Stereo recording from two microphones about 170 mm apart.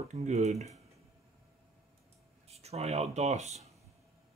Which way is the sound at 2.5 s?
40° right (ahead or behind).